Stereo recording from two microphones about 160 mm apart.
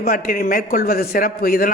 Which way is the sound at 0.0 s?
65° left (ahead or behind).